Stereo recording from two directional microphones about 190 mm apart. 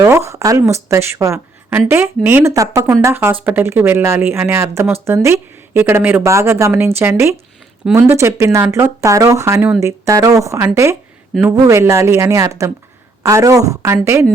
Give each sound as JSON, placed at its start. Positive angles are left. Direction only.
{"t": 0.0, "sound": "a woman's voice", "side_deg": -15}